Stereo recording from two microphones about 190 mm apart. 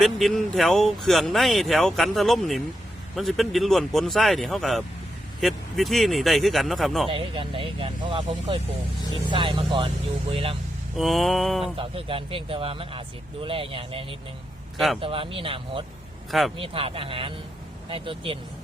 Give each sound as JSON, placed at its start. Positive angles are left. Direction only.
{"t": 0.0, "sound": "speech", "side_deg": 0}
{"t": 7.1, "sound": "speech", "side_deg": -25}
{"t": 9.3, "sound": "speech", "side_deg": -25}
{"t": 10.9, "sound": "speech", "side_deg": 0}
{"t": 11.8, "sound": "speech", "side_deg": -30}